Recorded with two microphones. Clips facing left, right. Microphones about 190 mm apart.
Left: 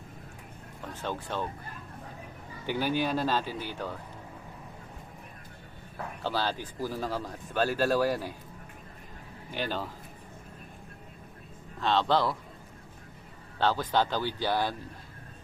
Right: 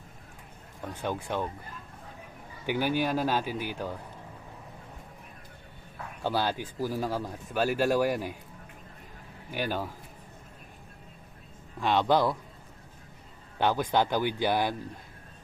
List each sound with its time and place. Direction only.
1.0 s speech: 15° right (ahead or behind)
2.6 s speech: 15° right (ahead or behind)
6.2 s speech: 15° right (ahead or behind)
9.5 s speech: 10° right (ahead or behind)
11.8 s speech: 15° right (ahead or behind)
13.6 s speech: 15° right (ahead or behind)